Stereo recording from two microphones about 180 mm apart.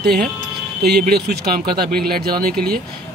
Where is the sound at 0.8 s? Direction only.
60° right (ahead or behind).